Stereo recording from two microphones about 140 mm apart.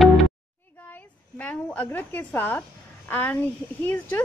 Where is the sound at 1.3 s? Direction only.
10° left (ahead or behind).